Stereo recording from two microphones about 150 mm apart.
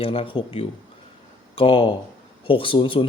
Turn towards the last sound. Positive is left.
turn(degrees=35)  # may be behind; listen again after turning